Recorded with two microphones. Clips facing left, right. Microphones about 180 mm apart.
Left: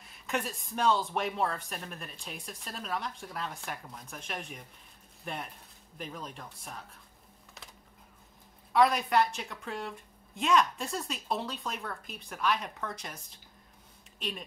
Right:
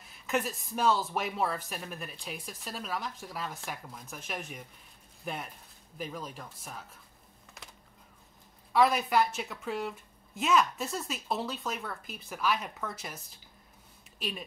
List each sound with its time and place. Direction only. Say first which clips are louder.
0.0 s speech: right 3 dB; centre (ahead or behind)
8.7 s speech: even; 5° right (ahead or behind)
14.2 s speech: right 1 dB; 5° right (ahead or behind)